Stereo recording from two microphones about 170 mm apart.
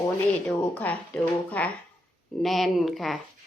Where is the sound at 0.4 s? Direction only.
10° left (ahead or behind).